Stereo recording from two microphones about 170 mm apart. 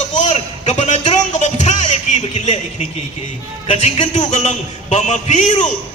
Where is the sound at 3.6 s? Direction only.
40° left (ahead or behind).